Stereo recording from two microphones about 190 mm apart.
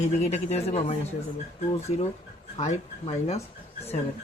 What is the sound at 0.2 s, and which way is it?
Speech, 35° left (ahead or behind).